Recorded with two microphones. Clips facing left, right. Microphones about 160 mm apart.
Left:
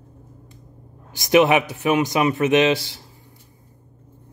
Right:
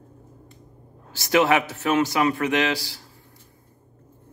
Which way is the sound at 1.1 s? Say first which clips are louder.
Left 4 dB; 15° left (ahead or behind).